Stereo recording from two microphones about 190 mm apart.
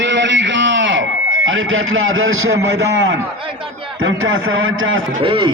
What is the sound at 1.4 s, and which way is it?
A man's voice, 90° right.